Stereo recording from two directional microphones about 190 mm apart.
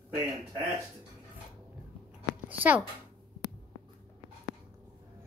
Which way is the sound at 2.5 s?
10° right (ahead or behind).